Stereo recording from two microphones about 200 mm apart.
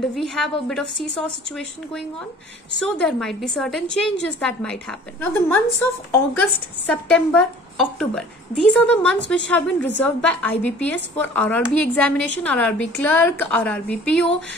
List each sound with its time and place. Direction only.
0.1 s a woman's voice: centre (ahead or behind)
3.0 s a woman's voice: centre (ahead or behind)